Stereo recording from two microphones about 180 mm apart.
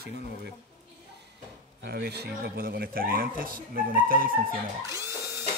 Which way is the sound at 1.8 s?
65° right (ahead or behind).